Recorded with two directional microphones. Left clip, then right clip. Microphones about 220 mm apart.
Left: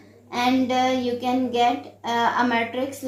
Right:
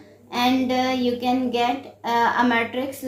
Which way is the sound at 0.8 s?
35° right (ahead or behind).